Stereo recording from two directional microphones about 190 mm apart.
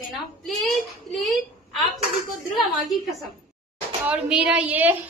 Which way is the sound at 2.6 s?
Centre (ahead or behind).